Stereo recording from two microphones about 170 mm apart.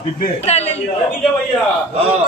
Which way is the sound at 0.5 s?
40° left (ahead or behind).